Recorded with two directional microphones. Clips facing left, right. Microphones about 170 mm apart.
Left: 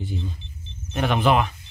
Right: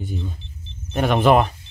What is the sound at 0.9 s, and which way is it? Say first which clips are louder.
Speech: right 4 dB; 45° right (ahead or behind).